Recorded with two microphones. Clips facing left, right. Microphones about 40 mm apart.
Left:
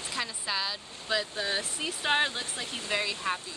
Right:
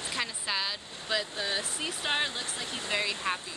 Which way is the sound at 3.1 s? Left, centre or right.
Right.